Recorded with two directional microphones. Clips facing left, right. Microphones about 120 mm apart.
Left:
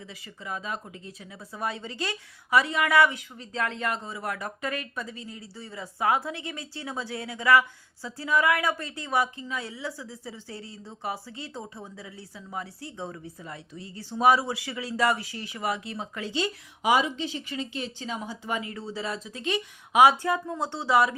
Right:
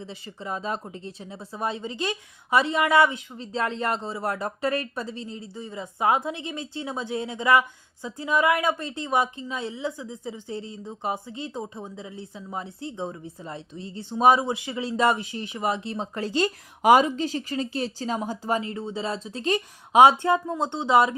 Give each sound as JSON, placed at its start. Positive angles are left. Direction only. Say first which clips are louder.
{"t": 0.0, "sound": "speech", "louder": "right 5 dB", "side_deg": -30}
{"t": 20.0, "sound": "speech", "louder": "right 3 dB", "side_deg": -25}